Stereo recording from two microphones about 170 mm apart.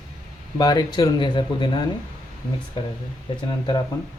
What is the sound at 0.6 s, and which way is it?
Speech, 25° left (ahead or behind).